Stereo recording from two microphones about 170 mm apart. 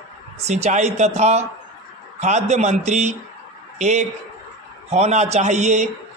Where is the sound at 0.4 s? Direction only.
40° right (ahead or behind).